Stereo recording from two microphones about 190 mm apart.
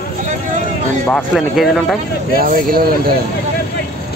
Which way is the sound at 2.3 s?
50° right (ahead or behind).